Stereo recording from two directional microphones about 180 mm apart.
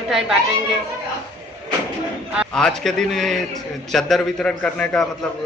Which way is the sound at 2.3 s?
Centre (ahead or behind).